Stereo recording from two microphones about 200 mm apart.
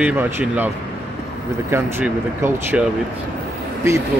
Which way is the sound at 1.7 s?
10° right (ahead or behind).